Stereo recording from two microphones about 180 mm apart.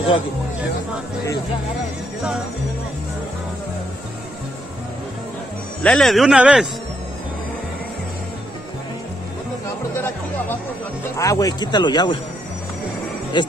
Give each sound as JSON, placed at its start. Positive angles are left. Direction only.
{"t": 5.9, "sound": "speech", "side_deg": 5}
{"t": 11.1, "sound": "speech", "side_deg": 20}
{"t": 13.4, "sound": "speech", "side_deg": 25}